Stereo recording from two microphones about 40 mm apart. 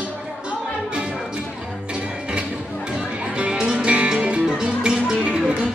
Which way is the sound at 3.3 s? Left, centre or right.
Right.